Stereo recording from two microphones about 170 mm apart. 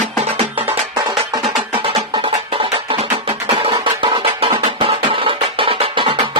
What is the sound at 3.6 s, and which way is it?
Music, 30° right (ahead or behind).